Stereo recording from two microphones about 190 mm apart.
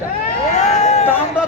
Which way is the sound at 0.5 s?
35° left (ahead or behind).